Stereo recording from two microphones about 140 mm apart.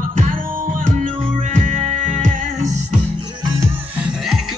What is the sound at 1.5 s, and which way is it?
Music, 65° right (ahead or behind).